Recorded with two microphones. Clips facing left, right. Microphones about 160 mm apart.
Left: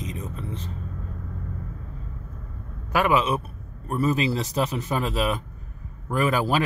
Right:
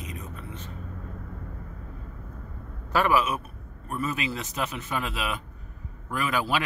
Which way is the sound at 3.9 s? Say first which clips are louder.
Left 7 dB; 35° left (ahead or behind).